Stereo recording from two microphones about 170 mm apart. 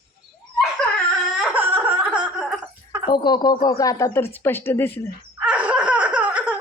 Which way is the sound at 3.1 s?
25° left (ahead or behind).